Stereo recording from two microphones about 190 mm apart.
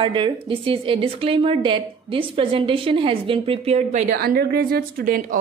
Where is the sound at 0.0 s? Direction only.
25° right (ahead or behind).